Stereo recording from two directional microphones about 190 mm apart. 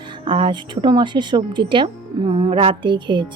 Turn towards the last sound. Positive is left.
turn(degrees=-25)  # may be behind; listen again after turning